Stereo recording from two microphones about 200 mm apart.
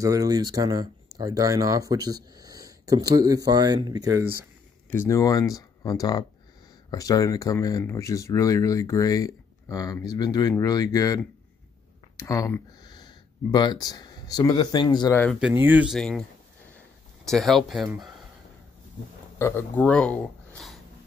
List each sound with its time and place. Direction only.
0.0 s speech: 15° right (ahead or behind)
4.8 s speech: 10° left (ahead or behind)
12.2 s speech: 15° left (ahead or behind)
15.4 s speech: 10° right (ahead or behind)
19.3 s speech: 10° left (ahead or behind)